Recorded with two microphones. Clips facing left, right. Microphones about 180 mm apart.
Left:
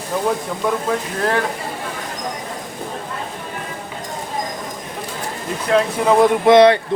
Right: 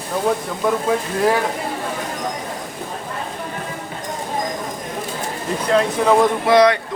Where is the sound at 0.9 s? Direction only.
5° right (ahead or behind).